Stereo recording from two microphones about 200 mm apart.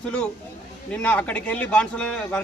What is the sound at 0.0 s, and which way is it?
A man's voice, 5° left (ahead or behind).